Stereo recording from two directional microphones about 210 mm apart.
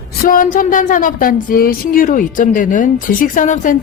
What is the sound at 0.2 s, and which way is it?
A woman's voice, 40° left (ahead or behind).